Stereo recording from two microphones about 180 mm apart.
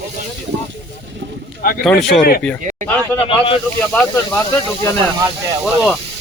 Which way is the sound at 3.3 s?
30° left (ahead or behind).